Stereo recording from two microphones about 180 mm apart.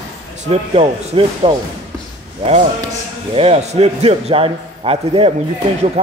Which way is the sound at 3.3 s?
35° right (ahead or behind).